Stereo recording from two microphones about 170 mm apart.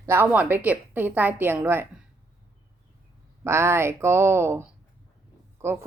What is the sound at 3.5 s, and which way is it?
A woman's voice, 15° right (ahead or behind).